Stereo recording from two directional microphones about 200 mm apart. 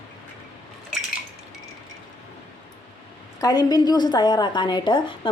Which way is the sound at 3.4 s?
20° left (ahead or behind).